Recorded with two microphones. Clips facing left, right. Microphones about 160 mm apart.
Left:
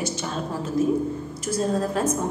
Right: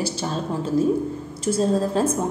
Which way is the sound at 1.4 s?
30° right (ahead or behind).